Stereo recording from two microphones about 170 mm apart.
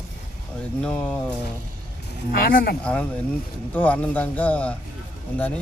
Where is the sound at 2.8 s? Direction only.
5° left (ahead or behind).